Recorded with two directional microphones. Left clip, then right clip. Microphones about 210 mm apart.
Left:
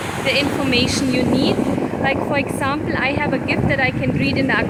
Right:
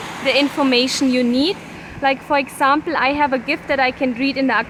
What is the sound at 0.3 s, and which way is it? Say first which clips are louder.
A woman's voice: right 3 dB; 15° right (ahead or behind).